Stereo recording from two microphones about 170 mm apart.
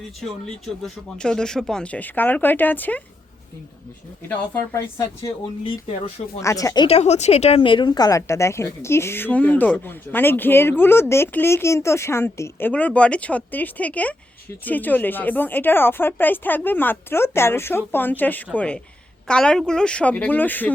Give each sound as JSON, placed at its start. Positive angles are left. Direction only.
{"t": 0.2, "sound": "speech", "side_deg": 0}
{"t": 4.3, "sound": "speech", "side_deg": 15}
{"t": 6.4, "sound": "speech", "side_deg": 20}
{"t": 6.8, "sound": "speech", "side_deg": 40}